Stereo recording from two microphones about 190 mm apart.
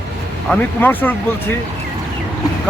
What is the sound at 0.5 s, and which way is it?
Speech, 10° left (ahead or behind).